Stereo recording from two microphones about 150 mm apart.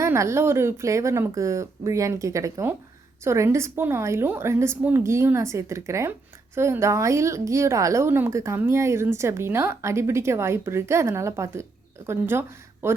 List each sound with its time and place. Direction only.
0.0 s a woman's voice: 20° right (ahead or behind)